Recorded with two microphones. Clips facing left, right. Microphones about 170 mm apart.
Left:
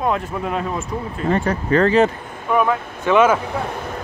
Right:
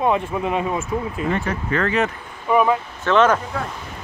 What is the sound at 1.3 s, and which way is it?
Speech, 35° left (ahead or behind).